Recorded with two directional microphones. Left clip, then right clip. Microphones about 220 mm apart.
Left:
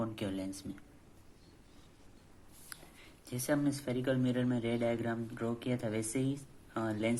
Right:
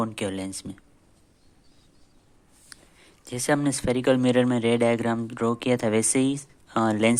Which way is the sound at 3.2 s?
35° right (ahead or behind).